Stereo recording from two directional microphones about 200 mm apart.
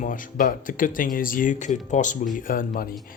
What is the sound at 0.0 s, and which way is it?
Speech, 40° left (ahead or behind).